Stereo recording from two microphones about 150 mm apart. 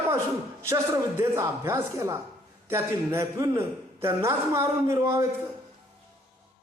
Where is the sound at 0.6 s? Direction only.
20° right (ahead or behind).